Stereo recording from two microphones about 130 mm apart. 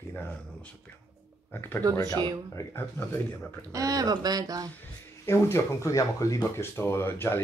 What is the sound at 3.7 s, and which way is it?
Speech, 25° right (ahead or behind).